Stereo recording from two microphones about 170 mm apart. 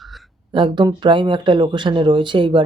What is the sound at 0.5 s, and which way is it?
Speech, 25° right (ahead or behind).